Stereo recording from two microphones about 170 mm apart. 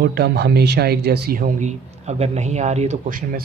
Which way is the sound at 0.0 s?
75° right (ahead or behind).